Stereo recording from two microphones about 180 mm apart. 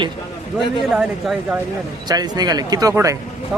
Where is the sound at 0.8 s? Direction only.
Centre (ahead or behind).